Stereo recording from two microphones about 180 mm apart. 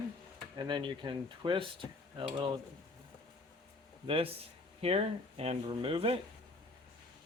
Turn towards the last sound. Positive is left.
turn(degrees=-30)  # may be behind; listen again after turning